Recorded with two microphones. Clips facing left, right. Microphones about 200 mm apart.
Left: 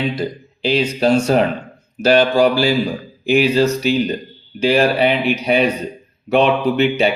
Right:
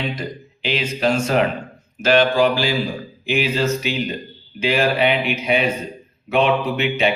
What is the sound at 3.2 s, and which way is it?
Speech, 35° left (ahead or behind).